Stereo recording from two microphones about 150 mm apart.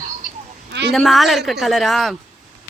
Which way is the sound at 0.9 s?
Centre (ahead or behind).